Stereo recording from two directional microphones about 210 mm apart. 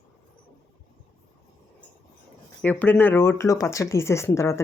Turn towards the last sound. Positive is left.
turn(degrees=15)  # may be behind; listen again after turning